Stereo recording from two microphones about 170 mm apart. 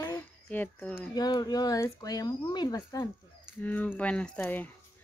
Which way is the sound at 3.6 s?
10° left (ahead or behind).